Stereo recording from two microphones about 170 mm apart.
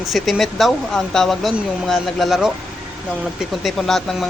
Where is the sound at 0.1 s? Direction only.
Centre (ahead or behind).